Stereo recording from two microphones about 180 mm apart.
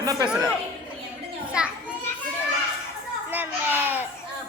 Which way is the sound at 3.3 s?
10° right (ahead or behind).